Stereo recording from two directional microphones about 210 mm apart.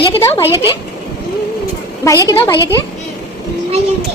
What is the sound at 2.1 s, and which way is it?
Speech, 15° left (ahead or behind).